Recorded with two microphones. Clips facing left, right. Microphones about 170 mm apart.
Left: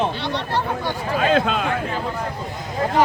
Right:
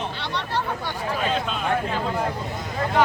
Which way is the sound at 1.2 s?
90° left.